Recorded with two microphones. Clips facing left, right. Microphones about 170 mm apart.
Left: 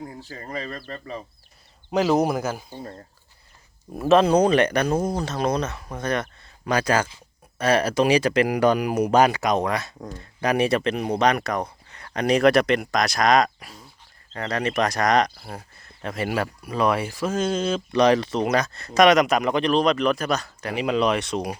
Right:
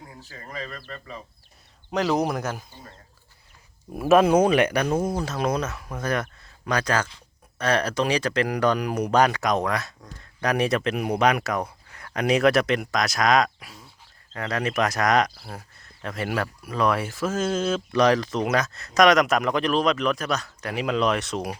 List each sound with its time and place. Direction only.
0.3 s speech: 35° left (ahead or behind)
1.9 s speech: 5° left (ahead or behind)
3.9 s speech: 10° right (ahead or behind)